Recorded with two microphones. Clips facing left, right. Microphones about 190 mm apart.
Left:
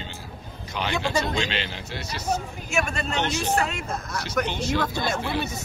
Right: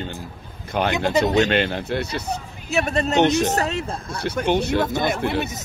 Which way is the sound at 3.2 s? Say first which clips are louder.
Right 9 dB; 65° right (ahead or behind).